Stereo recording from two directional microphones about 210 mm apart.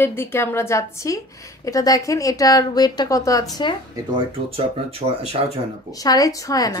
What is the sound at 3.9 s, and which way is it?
Speech, 25° right (ahead or behind).